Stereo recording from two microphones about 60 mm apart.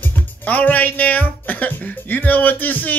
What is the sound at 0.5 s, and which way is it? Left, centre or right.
Speech, left.